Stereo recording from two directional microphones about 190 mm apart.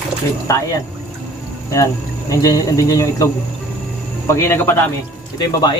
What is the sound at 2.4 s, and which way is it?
Speech, 20° left (ahead or behind).